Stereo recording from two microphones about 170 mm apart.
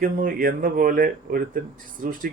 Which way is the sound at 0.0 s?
55° right (ahead or behind).